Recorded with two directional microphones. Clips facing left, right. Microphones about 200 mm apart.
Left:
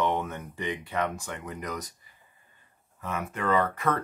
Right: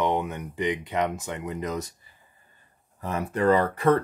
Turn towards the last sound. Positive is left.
turn(degrees=-30)  # may be behind; listen again after turning